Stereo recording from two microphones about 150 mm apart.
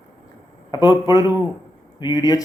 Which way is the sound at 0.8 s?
25° left (ahead or behind).